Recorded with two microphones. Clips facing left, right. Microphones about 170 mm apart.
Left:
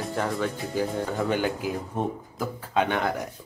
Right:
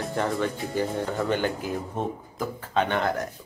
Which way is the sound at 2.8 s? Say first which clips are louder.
Even; 5° left (ahead or behind).